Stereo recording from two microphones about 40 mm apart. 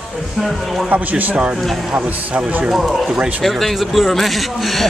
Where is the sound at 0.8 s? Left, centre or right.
Right.